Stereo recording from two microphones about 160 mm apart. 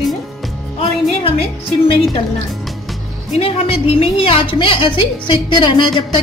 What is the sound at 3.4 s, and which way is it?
A woman's voice, 35° left (ahead or behind).